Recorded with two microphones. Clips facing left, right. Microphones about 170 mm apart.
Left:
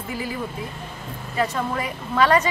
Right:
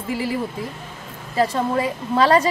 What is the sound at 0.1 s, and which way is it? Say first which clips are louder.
A woman's voice: right 6 dB; 30° right (ahead or behind).